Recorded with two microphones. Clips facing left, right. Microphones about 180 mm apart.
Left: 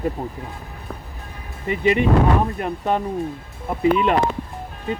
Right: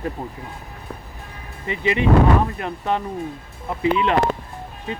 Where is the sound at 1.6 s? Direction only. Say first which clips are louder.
Left 3 dB; 45° left (ahead or behind).